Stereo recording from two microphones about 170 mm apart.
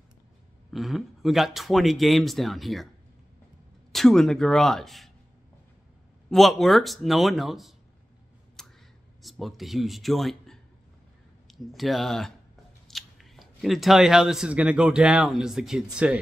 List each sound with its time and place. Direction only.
0.7 s speech: centre (ahead or behind)
3.9 s speech: centre (ahead or behind)
6.3 s speech: centre (ahead or behind)
8.6 s a sound: 5° left (ahead or behind)
9.2 s speech: centre (ahead or behind)